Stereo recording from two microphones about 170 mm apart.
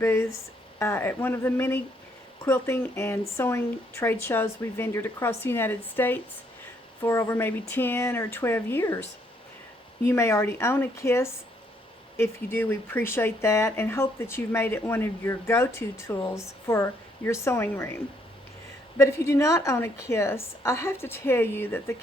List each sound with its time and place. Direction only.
0.0 s speech: 15° left (ahead or behind)
10.1 s speech: 15° left (ahead or behind)
18.9 s speech: 15° left (ahead or behind)